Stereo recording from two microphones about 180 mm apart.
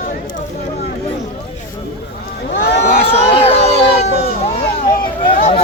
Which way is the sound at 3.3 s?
35° left (ahead or behind).